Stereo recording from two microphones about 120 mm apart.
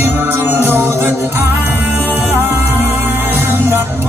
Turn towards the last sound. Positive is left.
turn(degrees=-20)  # may be behind; listen again after turning